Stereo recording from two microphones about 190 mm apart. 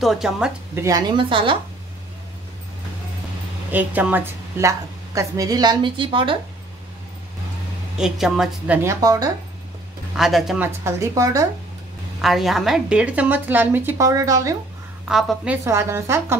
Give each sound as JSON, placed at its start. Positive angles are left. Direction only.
{"t": 0.0, "sound": "a woman's voice", "side_deg": 0}
{"t": 0.7, "sound": "a woman's voice", "side_deg": -20}
{"t": 3.7, "sound": "a woman's voice", "side_deg": -10}
{"t": 8.0, "sound": "a woman's voice", "side_deg": 0}
{"t": 8.8, "sound": "a woman's voice", "side_deg": -15}
{"t": 10.1, "sound": "a woman's voice", "side_deg": 0}
{"t": 10.8, "sound": "a woman's voice", "side_deg": -15}
{"t": 12.2, "sound": "a woman's voice", "side_deg": 0}
{"t": 15.0, "sound": "a woman's voice", "side_deg": 0}